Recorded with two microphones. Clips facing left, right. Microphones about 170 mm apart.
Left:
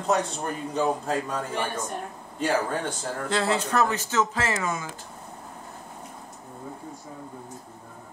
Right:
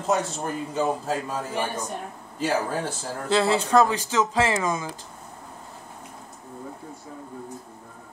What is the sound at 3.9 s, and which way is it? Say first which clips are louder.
Speech: right 3 dB; 15° right (ahead or behind).